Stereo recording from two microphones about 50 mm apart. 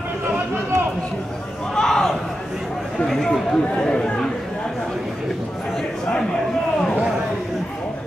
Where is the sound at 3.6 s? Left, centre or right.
Centre.